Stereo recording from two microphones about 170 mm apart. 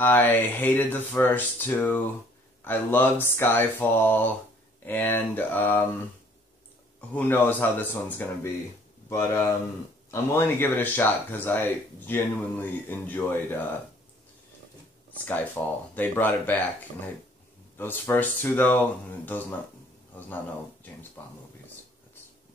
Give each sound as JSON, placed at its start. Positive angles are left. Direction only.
{"t": 0.0, "sound": "speech", "side_deg": 10}
{"t": 7.2, "sound": "speech", "side_deg": 10}
{"t": 15.2, "sound": "speech", "side_deg": 10}